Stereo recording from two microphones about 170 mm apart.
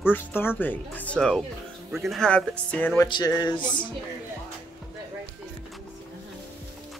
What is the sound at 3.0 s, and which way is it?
Speech, 25° left (ahead or behind).